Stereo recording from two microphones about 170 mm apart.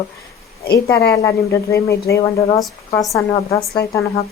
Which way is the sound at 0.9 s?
15° left (ahead or behind).